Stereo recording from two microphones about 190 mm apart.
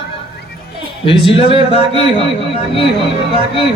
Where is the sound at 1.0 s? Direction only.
30° left (ahead or behind).